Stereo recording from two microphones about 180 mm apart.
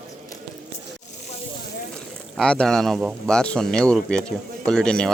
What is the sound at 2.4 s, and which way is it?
Speech, 5° left (ahead or behind).